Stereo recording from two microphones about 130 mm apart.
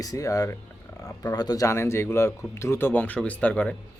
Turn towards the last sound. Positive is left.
turn(degrees=10)  # may be behind; listen again after turning